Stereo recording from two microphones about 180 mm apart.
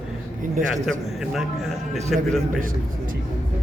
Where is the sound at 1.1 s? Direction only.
Centre (ahead or behind).